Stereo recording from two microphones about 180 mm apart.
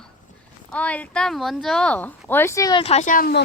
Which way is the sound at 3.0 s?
50° left (ahead or behind).